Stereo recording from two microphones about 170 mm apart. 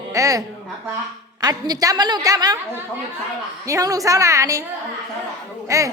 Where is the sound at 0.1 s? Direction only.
20° right (ahead or behind).